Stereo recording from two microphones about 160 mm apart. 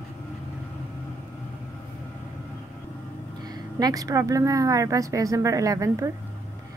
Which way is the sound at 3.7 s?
25° right (ahead or behind).